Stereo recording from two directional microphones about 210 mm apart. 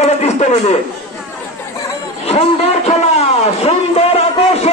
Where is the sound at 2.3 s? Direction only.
30° left (ahead or behind).